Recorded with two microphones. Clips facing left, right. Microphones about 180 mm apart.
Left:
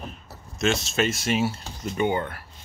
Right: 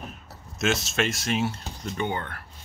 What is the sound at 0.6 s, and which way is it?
Speech, centre (ahead or behind).